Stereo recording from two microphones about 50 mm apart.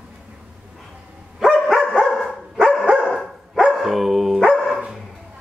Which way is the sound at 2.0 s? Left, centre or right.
Centre.